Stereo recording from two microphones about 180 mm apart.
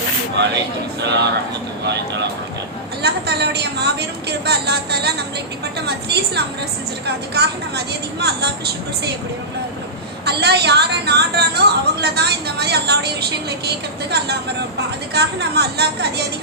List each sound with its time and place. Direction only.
1.0 s a woman's voice: 70° right (ahead or behind)
3.0 s a woman's voice: 65° right (ahead or behind)
10.2 s a woman's voice: 65° right (ahead or behind)